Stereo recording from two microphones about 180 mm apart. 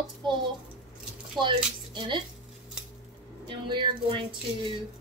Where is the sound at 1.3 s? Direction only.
25° right (ahead or behind).